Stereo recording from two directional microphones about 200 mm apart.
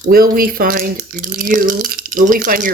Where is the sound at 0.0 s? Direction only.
45° right (ahead or behind).